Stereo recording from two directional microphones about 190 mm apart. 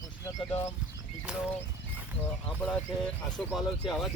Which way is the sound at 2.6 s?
10° left (ahead or behind).